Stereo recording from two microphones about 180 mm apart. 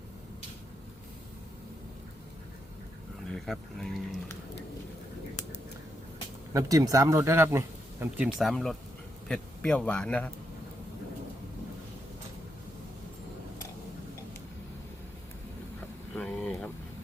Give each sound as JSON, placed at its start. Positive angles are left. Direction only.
{"t": 3.2, "sound": "speech", "side_deg": 0}
{"t": 6.5, "sound": "speech", "side_deg": -20}
{"t": 8.2, "sound": "a man's voice", "side_deg": 0}
{"t": 16.1, "sound": "a sound", "side_deg": 5}